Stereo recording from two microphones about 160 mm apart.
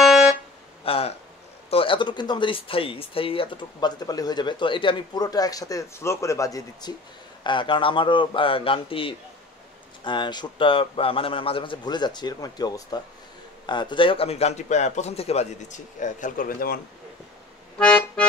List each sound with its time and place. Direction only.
0.8 s a sound: 35° left (ahead or behind)
1.7 s a man's voice: 35° left (ahead or behind); by 16.8 s 65° left (ahead or behind)
17.7 s accordion: 5° left (ahead or behind)